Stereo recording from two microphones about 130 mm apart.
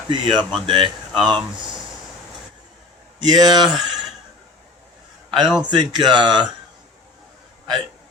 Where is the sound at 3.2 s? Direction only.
30° right (ahead or behind).